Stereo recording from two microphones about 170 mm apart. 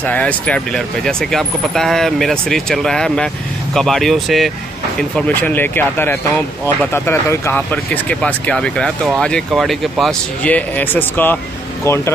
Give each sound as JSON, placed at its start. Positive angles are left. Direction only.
{"t": 0.0, "sound": "speech", "side_deg": 10}